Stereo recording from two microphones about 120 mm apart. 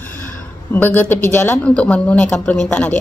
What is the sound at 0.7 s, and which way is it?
A man's voice, 15° left (ahead or behind).